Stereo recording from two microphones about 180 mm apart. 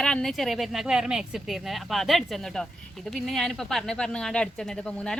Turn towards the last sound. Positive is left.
turn(degrees=5)  # may be behind; listen again after turning